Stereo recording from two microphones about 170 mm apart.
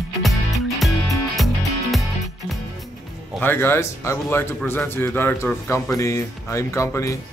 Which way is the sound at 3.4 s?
10° left (ahead or behind).